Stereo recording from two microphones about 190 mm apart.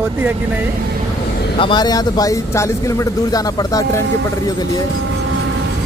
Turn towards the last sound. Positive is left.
turn(degrees=15)  # may be behind; listen again after turning